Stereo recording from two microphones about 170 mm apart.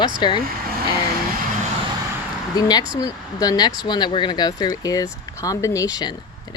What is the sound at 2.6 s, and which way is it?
Speech, 25° left (ahead or behind).